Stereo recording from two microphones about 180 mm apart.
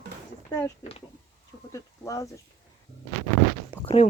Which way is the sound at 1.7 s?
20° left (ahead or behind).